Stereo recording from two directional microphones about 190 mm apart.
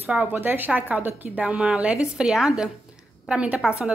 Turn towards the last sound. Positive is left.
turn(degrees=-5)  # may be behind; listen again after turning